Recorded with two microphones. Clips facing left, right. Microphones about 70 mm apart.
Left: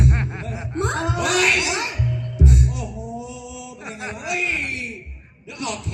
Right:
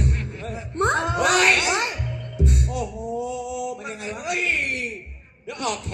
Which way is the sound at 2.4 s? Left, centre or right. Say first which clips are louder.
Left 3 dB; right.